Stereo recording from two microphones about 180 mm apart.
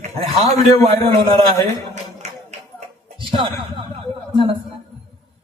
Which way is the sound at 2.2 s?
40° right (ahead or behind).